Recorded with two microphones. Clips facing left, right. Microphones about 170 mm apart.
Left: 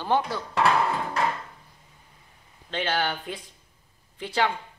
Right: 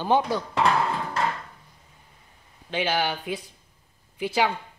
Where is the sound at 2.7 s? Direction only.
10° right (ahead or behind).